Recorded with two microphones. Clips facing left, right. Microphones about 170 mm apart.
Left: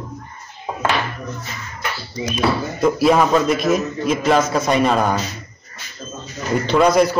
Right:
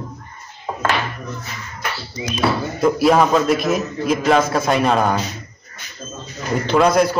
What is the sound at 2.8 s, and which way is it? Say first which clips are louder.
A man's voice: right 1 dB; centre (ahead or behind).